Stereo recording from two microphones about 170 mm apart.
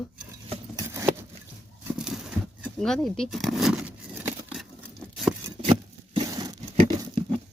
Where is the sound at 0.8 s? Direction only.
15° right (ahead or behind).